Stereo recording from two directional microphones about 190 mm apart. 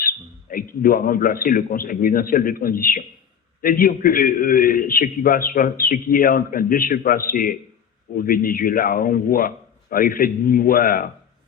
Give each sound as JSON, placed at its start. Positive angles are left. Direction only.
{"t": 0.5, "sound": "a man's voice", "side_deg": 50}